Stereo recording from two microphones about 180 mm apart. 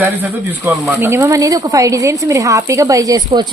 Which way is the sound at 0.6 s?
15° right (ahead or behind).